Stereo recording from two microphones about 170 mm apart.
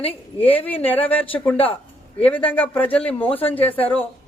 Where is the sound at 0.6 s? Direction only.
10° left (ahead or behind).